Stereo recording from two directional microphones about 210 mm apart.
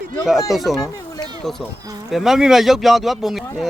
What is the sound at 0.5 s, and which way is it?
Speech, centre (ahead or behind).